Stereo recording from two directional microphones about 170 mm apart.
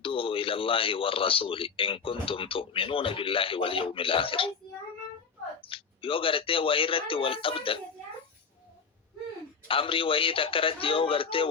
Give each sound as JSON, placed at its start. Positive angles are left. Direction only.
{"t": 0.0, "sound": "speech", "side_deg": 30}
{"t": 5.6, "sound": "speech", "side_deg": 30}
{"t": 9.6, "sound": "speech", "side_deg": 30}